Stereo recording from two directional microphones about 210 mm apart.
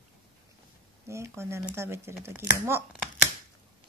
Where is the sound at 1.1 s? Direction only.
15° right (ahead or behind).